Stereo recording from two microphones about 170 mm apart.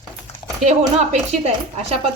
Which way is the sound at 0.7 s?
40° right (ahead or behind).